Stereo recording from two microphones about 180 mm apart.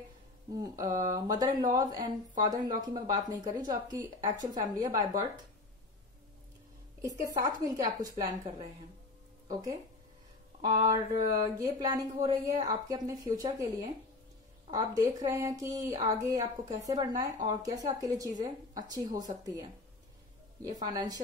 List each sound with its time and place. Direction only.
0.5 s speech: 20° right (ahead or behind)
7.0 s speech: 20° right (ahead or behind)